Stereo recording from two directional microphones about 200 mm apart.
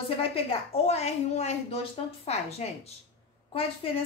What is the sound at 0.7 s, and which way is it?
A woman's voice, 30° left (ahead or behind).